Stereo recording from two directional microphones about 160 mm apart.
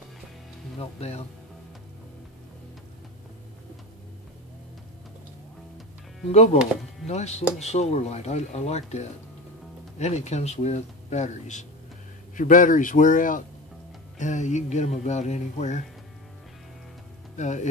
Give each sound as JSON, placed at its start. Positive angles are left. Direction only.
{"t": 0.7, "sound": "speech", "side_deg": 40}
{"t": 6.3, "sound": "a man's voice", "side_deg": 40}
{"t": 17.4, "sound": "speech", "side_deg": 45}